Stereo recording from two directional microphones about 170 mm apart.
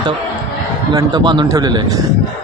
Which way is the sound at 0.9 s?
25° right (ahead or behind).